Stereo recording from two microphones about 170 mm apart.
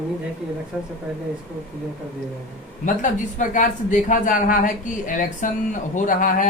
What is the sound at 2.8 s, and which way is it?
Speech, 50° left (ahead or behind).